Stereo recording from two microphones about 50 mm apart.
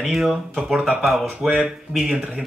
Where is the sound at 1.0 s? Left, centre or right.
Centre.